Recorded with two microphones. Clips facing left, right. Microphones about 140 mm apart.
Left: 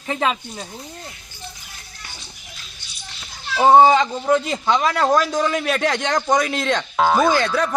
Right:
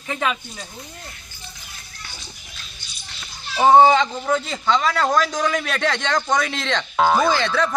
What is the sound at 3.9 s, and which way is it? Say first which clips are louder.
A man's voice: left 2 dB; 10° left (ahead or behind).